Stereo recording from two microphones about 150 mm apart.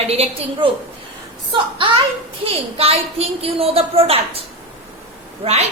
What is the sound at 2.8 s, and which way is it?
A woman's voice, 40° right (ahead or behind).